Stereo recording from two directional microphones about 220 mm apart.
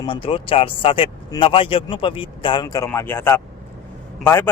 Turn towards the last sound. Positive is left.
turn(degrees=10)  # may be behind; listen again after turning